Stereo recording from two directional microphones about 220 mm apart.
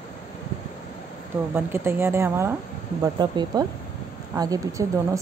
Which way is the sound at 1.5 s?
10° right (ahead or behind).